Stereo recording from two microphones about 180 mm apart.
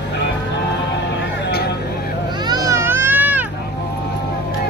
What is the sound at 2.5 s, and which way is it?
Baby cry, 20° right (ahead or behind).